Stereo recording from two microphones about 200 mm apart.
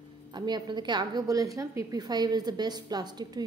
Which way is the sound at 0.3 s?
20° right (ahead or behind).